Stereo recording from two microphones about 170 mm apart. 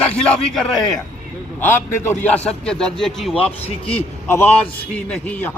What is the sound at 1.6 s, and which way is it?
Speech, 10° left (ahead or behind).